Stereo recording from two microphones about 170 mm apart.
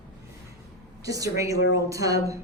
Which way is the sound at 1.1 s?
20° right (ahead or behind).